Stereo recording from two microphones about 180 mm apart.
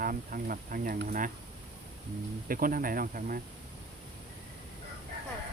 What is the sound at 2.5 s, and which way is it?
Speech, 50° right (ahead or behind).